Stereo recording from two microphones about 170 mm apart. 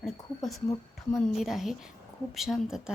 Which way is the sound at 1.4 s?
Centre (ahead or behind).